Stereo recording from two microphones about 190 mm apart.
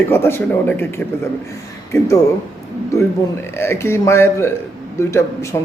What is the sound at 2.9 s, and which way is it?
Speech, 15° left (ahead or behind).